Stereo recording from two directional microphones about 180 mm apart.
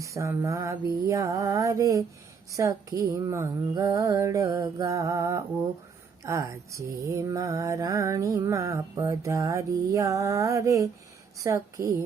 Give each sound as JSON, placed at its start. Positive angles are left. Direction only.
{"t": 0.0, "sound": "mantra", "side_deg": -15}